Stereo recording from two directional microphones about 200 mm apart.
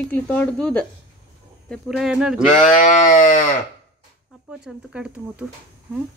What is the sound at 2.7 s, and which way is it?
Livestock, 40° left (ahead or behind).